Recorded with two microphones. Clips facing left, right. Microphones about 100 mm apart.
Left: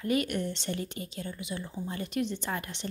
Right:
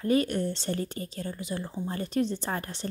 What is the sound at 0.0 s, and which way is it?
A woman's voice, 35° right (ahead or behind).